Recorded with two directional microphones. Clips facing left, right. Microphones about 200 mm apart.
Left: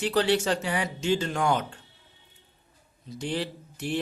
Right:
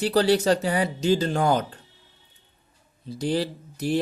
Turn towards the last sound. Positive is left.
turn(degrees=-40)  # may be behind; listen again after turning